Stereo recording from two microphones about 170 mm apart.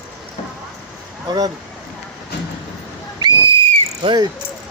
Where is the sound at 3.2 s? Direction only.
25° right (ahead or behind).